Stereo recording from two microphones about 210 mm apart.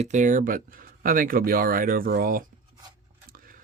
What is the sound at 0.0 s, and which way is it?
Speech, 35° right (ahead or behind).